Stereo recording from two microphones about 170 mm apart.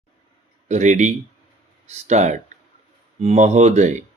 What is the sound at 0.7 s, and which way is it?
Speech, 45° right (ahead or behind).